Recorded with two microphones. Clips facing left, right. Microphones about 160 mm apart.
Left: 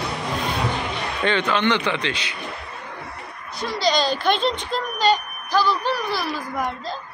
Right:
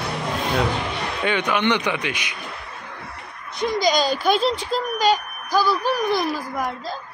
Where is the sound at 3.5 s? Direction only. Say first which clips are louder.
Right 2 dB; 15° right (ahead or behind).